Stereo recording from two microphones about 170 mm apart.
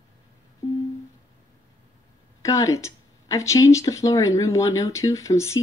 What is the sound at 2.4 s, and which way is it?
Speech, 20° left (ahead or behind).